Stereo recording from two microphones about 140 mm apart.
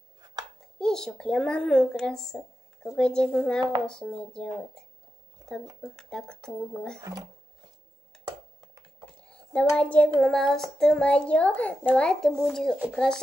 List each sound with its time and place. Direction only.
0.7 s speech: 5° left (ahead or behind)
7.0 s speech: 25° right (ahead or behind)
9.3 s a sound: 10° left (ahead or behind)
12.4 s speech: 5° left (ahead or behind)